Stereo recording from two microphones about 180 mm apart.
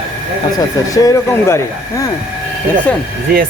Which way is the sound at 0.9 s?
15° left (ahead or behind).